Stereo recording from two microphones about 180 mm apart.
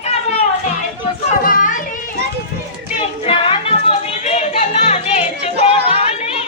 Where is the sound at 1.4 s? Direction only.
50° left (ahead or behind).